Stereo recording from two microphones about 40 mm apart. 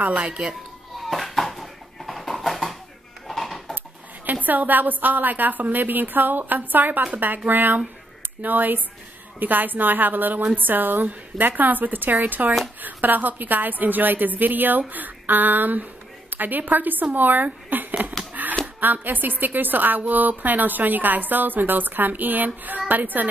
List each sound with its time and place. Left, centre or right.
0.2 s speech: right
1.0 s dishes: centre
3.3 s a sound: centre
4.5 s a woman's voice: right
18.3 s a sound: right
18.8 s a woman's voice: right